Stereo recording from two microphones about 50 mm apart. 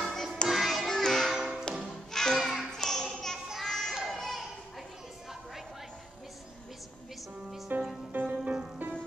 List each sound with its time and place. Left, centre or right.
0.0 s music: centre
0.5 s music: centre
0.8 s music: centre
1.3 s music: centre
1.9 s music: centre
3.6 s a sound: centre
4.1 s children playing: centre
7.7 s music: right